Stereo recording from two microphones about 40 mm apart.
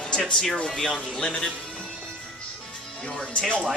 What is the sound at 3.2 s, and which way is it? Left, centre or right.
Speech, left.